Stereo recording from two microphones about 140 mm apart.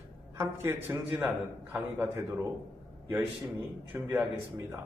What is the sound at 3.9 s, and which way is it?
Speech, 15° right (ahead or behind).